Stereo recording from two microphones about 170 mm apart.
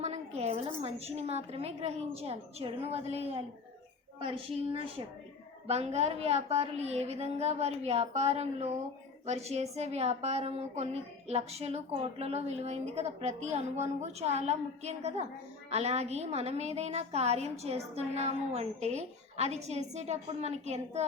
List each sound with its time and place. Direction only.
0.0 s a woman's voice: 40° right (ahead or behind)